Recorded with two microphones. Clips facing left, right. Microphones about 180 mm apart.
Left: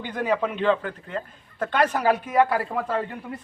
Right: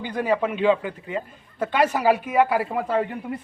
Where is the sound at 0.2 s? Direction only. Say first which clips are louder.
Right 2 dB; 10° right (ahead or behind).